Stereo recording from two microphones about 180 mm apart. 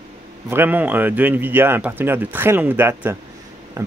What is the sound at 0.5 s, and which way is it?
Speech, 10° right (ahead or behind).